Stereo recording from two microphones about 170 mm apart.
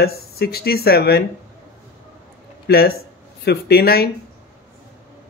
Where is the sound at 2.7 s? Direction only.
65° left (ahead or behind).